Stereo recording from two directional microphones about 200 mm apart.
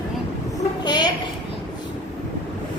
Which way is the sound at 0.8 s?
20° left (ahead or behind).